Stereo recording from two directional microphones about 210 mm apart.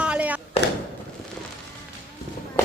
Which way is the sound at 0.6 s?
30° left (ahead or behind).